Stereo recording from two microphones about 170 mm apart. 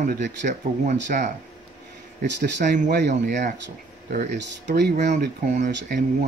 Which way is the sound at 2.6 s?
45° right (ahead or behind).